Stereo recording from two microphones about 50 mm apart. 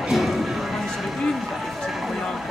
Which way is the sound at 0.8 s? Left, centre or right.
Centre.